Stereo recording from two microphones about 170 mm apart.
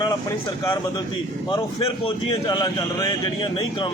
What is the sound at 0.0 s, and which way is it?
A man's voice, 20° left (ahead or behind).